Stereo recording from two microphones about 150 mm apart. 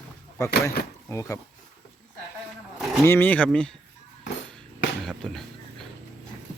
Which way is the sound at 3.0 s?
15° left (ahead or behind).